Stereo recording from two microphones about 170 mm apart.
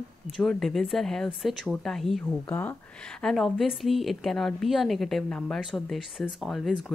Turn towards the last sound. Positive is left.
turn(degrees=0)  # may be behind; listen again after turning